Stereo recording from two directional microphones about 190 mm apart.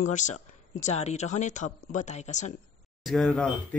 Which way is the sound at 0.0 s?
40° left (ahead or behind).